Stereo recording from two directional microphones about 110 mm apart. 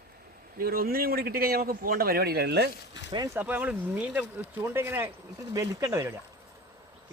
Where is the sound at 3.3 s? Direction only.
15° right (ahead or behind).